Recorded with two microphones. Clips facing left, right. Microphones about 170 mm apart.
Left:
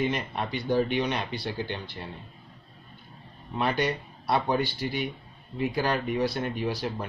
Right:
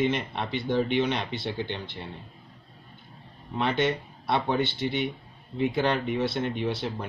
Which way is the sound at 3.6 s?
25° right (ahead or behind).